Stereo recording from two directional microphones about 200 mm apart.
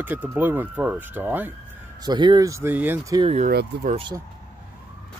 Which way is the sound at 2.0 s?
20° right (ahead or behind).